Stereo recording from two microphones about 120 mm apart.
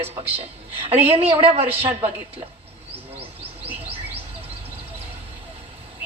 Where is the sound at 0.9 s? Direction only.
55° right (ahead or behind).